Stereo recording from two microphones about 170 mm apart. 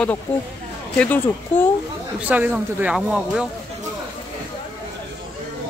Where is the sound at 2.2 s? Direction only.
10° right (ahead or behind).